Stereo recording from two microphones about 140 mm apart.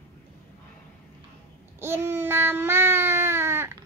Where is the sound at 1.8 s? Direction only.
15° right (ahead or behind).